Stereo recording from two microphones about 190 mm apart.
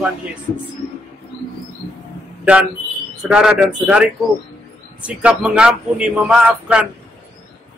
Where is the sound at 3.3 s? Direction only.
5° right (ahead or behind).